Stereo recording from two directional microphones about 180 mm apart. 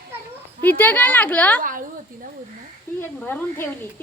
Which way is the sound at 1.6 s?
50° right (ahead or behind).